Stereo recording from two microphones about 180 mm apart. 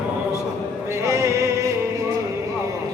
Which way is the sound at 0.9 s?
15° right (ahead or behind).